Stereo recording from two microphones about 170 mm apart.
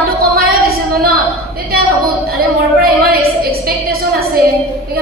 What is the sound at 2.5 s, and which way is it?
A woman's voice, 65° right (ahead or behind).